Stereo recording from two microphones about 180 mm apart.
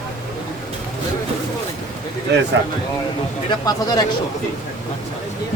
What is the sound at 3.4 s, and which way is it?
Speech, 20° left (ahead or behind).